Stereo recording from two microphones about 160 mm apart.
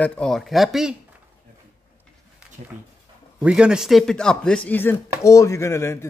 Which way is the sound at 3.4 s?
5° right (ahead or behind).